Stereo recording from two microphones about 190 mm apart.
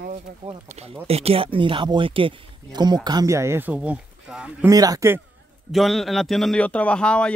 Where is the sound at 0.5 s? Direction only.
30° right (ahead or behind); by 4.6 s 5° right (ahead or behind).